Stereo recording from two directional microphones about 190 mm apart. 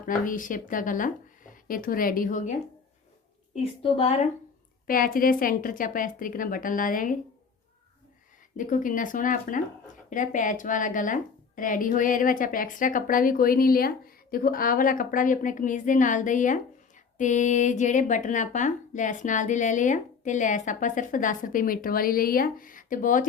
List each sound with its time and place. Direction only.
0.1 s speech: 45° left (ahead or behind)
3.5 s speech: 30° left (ahead or behind)
4.9 s speech: 50° left (ahead or behind)
8.5 s speech: 45° left (ahead or behind)